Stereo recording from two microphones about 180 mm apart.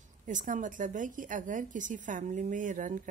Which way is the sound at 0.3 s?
45° right (ahead or behind).